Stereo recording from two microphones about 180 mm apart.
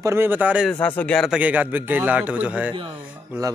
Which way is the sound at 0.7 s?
10° left (ahead or behind).